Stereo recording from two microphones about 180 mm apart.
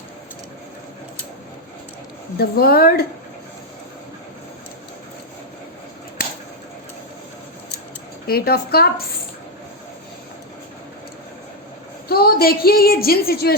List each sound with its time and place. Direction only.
2.4 s speech: 60° left (ahead or behind)
8.3 s speech: 60° left (ahead or behind)
12.0 s a woman's voice: 60° left (ahead or behind)